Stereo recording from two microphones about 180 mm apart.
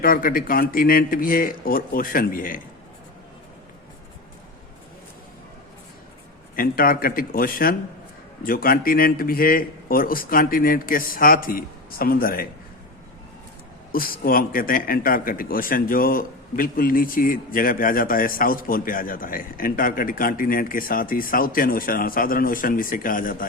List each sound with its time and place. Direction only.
0.0 s a man's voice: 50° left (ahead or behind)
6.6 s a man's voice: 55° left (ahead or behind)
13.9 s a man's voice: 55° left (ahead or behind)